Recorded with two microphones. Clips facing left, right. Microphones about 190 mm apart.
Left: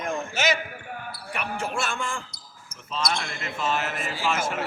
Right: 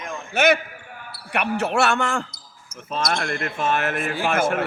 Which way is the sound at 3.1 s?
55° right (ahead or behind).